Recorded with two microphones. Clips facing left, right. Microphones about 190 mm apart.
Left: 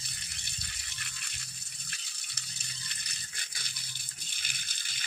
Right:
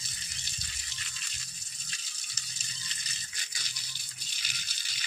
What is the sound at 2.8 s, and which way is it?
Rattle, 60° left (ahead or behind).